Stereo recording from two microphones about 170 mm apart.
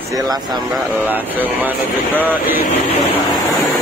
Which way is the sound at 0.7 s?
5° right (ahead or behind).